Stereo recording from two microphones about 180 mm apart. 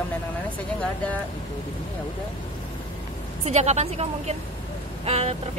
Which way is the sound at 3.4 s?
35° right (ahead or behind).